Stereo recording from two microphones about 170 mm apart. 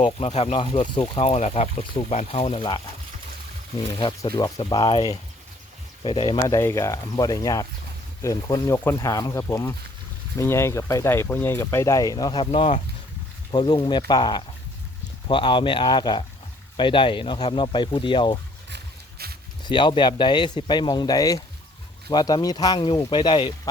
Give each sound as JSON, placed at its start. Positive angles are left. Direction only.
{"t": 0.0, "sound": "a man's voice", "side_deg": 40}
{"t": 1.2, "sound": "speech", "side_deg": 40}
{"t": 4.2, "sound": "a man's voice", "side_deg": 20}
{"t": 6.5, "sound": "a man's voice", "side_deg": 15}
{"t": 13.5, "sound": "a man's voice", "side_deg": 25}
{"t": 19.2, "sound": "zipper", "side_deg": -65}
{"t": 19.6, "sound": "a man's voice", "side_deg": 30}